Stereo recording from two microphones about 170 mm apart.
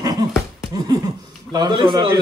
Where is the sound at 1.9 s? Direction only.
25° right (ahead or behind).